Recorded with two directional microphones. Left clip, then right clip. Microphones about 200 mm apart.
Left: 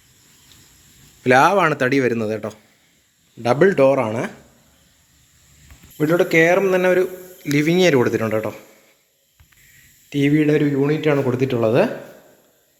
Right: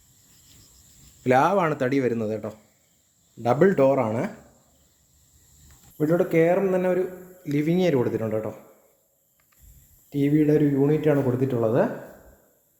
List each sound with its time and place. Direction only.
1.2 s a man's voice: centre (ahead or behind)
6.0 s a man's voice: 5° right (ahead or behind)
10.1 s a man's voice: centre (ahead or behind); by 11.2 s 20° right (ahead or behind)
11.3 s a man's voice: centre (ahead or behind)